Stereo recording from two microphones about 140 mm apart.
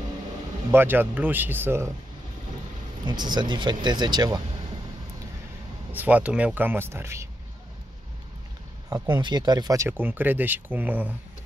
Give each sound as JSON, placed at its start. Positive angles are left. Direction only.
{"t": 0.7, "sound": "speech", "side_deg": -15}
{"t": 3.1, "sound": "speech", "side_deg": -30}
{"t": 5.9, "sound": "speech", "side_deg": -10}
{"t": 8.9, "sound": "speech", "side_deg": -30}